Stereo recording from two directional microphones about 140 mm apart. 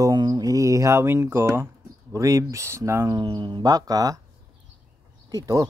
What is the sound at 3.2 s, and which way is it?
Speech, 30° right (ahead or behind).